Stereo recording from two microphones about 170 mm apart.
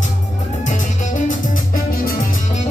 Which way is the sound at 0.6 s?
45° left (ahead or behind).